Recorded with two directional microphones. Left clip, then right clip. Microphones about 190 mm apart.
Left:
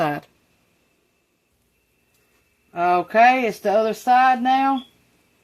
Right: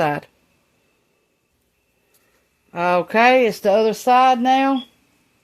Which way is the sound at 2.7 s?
65° right (ahead or behind).